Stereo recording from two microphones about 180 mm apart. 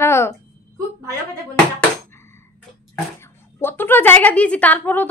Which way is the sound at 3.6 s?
10° left (ahead or behind).